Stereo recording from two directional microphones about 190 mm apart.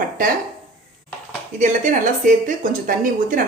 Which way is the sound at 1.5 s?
40° right (ahead or behind).